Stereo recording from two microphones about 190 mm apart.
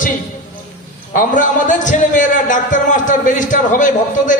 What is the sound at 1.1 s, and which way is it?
A man's voice, 45° left (ahead or behind).